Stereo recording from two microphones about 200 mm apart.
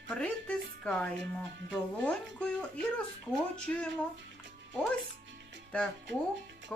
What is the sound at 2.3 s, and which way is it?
Speech, 5° left (ahead or behind).